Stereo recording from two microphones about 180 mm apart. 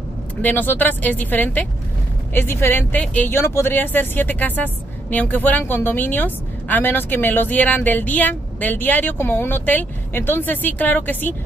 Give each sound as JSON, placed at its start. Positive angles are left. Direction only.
{"t": 0.4, "sound": "a woman's voice", "side_deg": 10}